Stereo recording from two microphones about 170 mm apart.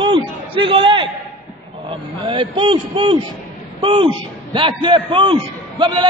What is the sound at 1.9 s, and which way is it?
A man's voice, 30° right (ahead or behind).